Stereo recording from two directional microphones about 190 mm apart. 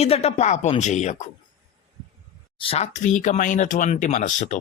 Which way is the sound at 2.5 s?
30° left (ahead or behind).